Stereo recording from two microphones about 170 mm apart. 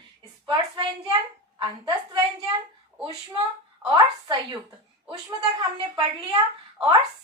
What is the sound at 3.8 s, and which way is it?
A woman's voice, 30° right (ahead or behind).